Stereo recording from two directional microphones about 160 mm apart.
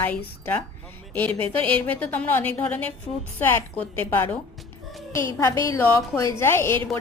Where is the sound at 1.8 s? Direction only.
10° left (ahead or behind).